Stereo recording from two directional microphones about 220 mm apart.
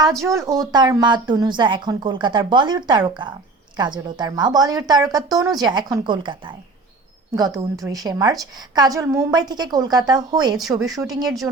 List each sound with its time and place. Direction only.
0.3 s a woman's voice: 15° right (ahead or behind)